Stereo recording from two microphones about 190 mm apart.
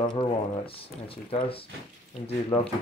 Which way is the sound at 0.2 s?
30° left (ahead or behind).